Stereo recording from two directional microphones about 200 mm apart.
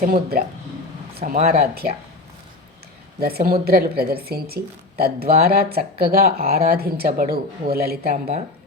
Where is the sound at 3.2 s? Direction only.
50° right (ahead or behind).